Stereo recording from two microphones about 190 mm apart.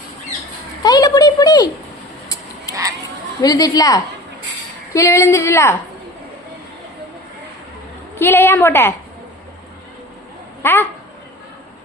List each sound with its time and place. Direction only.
0.8 s a sound: 20° left (ahead or behind)
3.4 s a woman's voice: 20° left (ahead or behind)
8.2 s a woman's voice: 10° left (ahead or behind)
10.6 s speech: 10° left (ahead or behind)